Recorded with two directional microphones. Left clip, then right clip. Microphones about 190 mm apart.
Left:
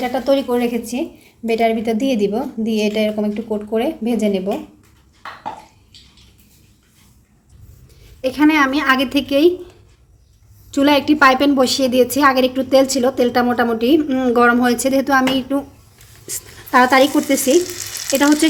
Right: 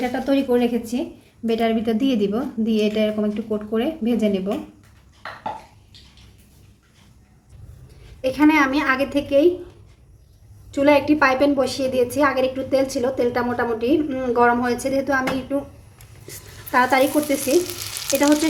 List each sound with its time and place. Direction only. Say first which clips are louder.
0.3 s a woman's voice: left 2 dB; 20° left (ahead or behind)
8.2 s a woman's voice: left 2 dB; 40° left (ahead or behind)
10.7 s a woman's voice: left 2 dB; 45° left (ahead or behind)
16.7 s a woman's voice: left 5 dB; 40° left (ahead or behind)